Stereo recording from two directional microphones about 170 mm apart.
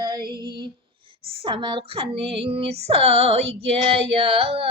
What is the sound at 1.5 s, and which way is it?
Female singing, 30° right (ahead or behind).